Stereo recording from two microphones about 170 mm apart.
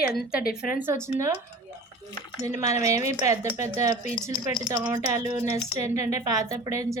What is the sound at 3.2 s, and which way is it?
Speech, 20° right (ahead or behind).